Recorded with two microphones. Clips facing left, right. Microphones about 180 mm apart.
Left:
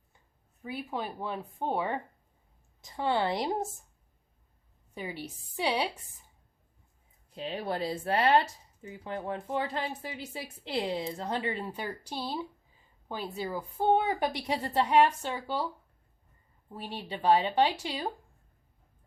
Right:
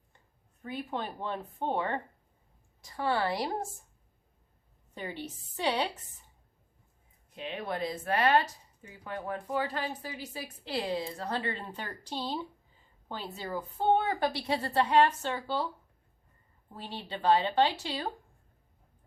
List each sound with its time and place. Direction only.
0.6 s a woman's voice: 10° left (ahead or behind)
2.8 s speech: 20° left (ahead or behind)
4.9 s a woman's voice: 10° left (ahead or behind)
7.3 s a woman's voice: 35° left (ahead or behind); by 15.6 s 10° left (ahead or behind)
16.7 s a woman's voice: 10° left (ahead or behind)